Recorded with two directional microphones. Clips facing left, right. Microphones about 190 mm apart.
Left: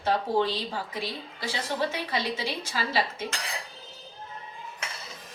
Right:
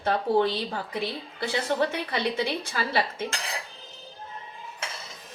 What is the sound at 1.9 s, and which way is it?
A woman's voice, 60° right (ahead or behind).